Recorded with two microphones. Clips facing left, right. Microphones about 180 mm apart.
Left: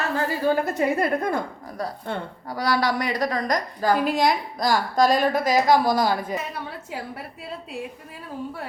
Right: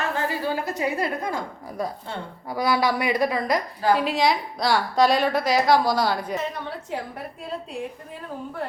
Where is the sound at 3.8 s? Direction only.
45° left (ahead or behind).